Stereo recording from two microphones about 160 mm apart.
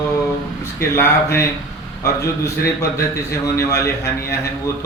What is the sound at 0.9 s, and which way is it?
A man's voice, 15° left (ahead or behind).